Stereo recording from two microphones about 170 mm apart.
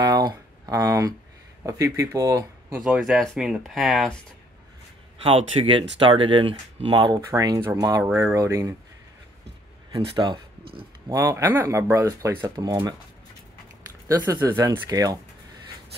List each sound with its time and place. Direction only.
0.0 s a sound: 25° right (ahead or behind)
1.7 s speech: 15° right (ahead or behind)
2.8 s speech: centre (ahead or behind)
5.2 s speech: 35° right (ahead or behind)
7.2 s speech: 20° right (ahead or behind)
9.9 s speech: 25° right (ahead or behind)
14.0 s speech: 20° right (ahead or behind)